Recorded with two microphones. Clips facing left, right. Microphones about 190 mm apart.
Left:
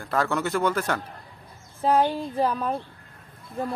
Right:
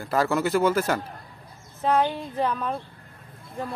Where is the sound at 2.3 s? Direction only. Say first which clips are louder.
Left 1 dB; 10° left (ahead or behind).